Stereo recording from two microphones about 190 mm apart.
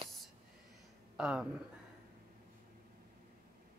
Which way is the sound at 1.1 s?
5° right (ahead or behind).